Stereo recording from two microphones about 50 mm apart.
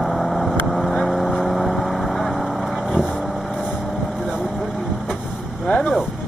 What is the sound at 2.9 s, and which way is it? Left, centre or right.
Vehicle, centre.